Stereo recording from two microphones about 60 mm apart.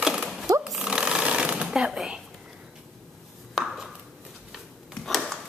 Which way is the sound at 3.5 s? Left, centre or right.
Centre.